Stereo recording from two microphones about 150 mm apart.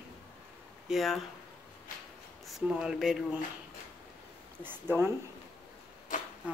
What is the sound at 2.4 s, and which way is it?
Speech, 5° right (ahead or behind).